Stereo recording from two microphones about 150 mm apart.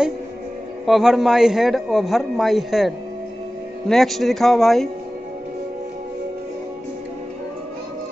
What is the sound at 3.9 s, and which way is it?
Speech, centre (ahead or behind).